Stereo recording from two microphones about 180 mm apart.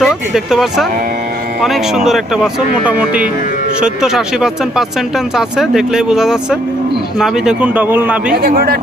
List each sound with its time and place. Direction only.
0.0 s speech: centre (ahead or behind)
8.4 s speech: 55° right (ahead or behind)